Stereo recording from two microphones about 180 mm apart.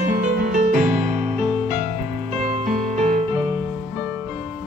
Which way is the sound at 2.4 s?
40° right (ahead or behind).